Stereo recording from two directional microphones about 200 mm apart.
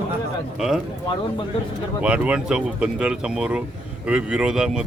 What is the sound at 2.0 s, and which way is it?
Speech, 5° right (ahead or behind).